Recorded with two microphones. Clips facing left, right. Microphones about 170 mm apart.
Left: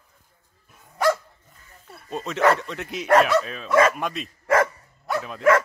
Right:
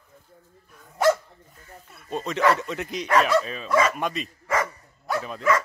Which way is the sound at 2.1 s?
Centre (ahead or behind).